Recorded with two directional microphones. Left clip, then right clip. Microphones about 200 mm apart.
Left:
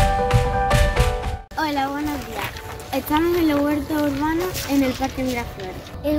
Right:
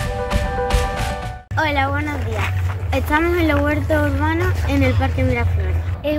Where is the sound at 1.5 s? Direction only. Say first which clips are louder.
Right 4 dB; 10° right (ahead or behind).